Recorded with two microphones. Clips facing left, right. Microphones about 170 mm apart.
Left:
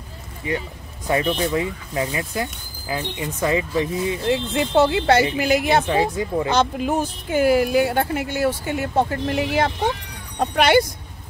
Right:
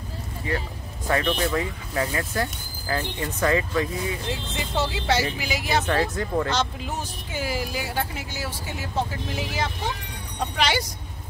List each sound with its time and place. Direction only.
0.5 s speech: 15° left (ahead or behind)
4.3 s speech: 60° left (ahead or behind)
5.9 s speech: 10° left (ahead or behind)
6.5 s speech: 55° left (ahead or behind)